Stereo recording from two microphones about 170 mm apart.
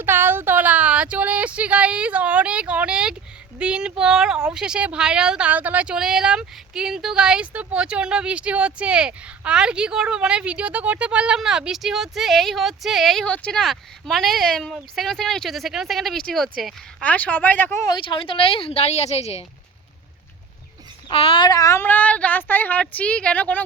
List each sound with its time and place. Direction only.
0.0 s a sound: 15° right (ahead or behind)
3.6 s speech: 5° right (ahead or behind); by 17.7 s 10° left (ahead or behind)
17.8 s speech: 30° left (ahead or behind)
21.1 s speech: 30° left (ahead or behind); by 23.6 s 10° left (ahead or behind)